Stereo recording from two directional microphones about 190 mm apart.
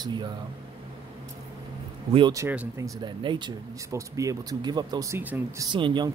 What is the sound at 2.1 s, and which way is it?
Speech, 20° right (ahead or behind).